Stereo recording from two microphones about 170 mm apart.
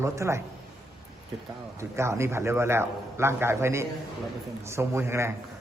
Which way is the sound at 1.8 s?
15° right (ahead or behind).